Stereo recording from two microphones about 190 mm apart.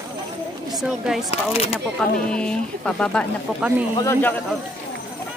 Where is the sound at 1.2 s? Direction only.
30° left (ahead or behind).